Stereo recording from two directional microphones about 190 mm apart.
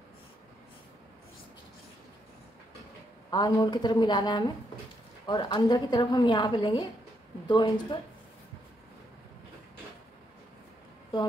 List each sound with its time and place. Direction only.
3.3 s a woman's voice: 20° left (ahead or behind)